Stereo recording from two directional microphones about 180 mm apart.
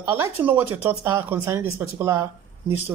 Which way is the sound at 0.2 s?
10° right (ahead or behind).